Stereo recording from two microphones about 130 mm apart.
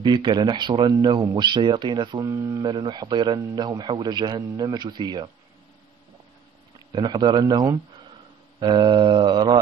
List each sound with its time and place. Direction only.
0.0 s a man's voice: 35° right (ahead or behind)
2.2 s a man's voice: 25° right (ahead or behind)
6.9 s a man's voice: 35° right (ahead or behind)